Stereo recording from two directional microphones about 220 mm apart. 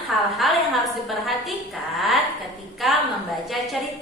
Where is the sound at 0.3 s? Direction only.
Centre (ahead or behind).